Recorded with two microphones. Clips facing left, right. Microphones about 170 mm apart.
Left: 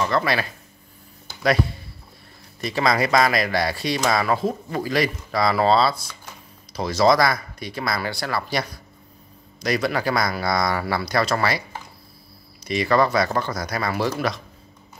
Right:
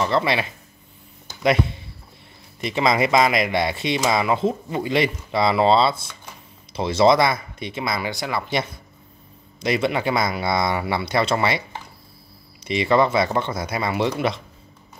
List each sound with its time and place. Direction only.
0.0 s speech: 25° right (ahead or behind)
1.2 s music: 20° right (ahead or behind)
2.6 s speech: 20° right (ahead or behind)
12.6 s speech: 25° right (ahead or behind)